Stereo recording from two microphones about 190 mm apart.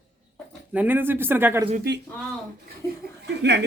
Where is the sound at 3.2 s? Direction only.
65° right (ahead or behind).